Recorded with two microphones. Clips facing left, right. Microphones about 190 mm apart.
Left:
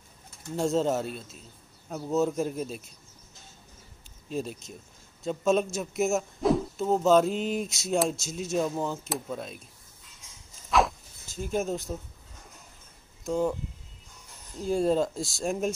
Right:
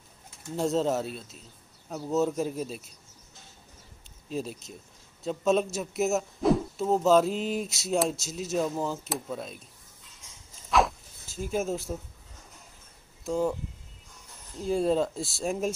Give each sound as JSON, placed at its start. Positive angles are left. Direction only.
{"t": 0.6, "sound": "speech", "side_deg": 0}
{"t": 4.3, "sound": "speech", "side_deg": 0}
{"t": 10.7, "sound": "a sound", "side_deg": 0}
{"t": 13.2, "sound": "speech", "side_deg": 0}
{"t": 14.6, "sound": "speech", "side_deg": 0}